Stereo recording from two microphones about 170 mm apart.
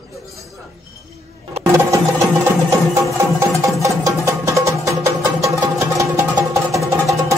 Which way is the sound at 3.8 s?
20° right (ahead or behind).